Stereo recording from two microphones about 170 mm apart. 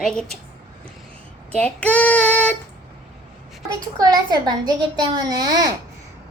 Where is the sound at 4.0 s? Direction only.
25° right (ahead or behind).